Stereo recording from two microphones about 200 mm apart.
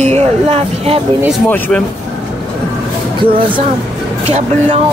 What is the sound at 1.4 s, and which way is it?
Speech, 10° left (ahead or behind).